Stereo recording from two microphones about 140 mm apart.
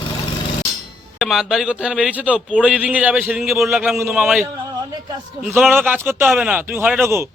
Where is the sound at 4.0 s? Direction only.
15° right (ahead or behind).